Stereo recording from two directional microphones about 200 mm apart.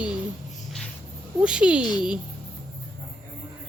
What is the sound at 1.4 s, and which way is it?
Speech, 5° right (ahead or behind).